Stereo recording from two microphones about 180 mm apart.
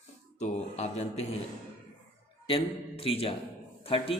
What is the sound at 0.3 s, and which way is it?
Speech, 40° left (ahead or behind).